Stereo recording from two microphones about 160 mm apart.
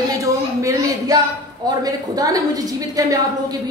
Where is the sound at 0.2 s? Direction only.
20° right (ahead or behind).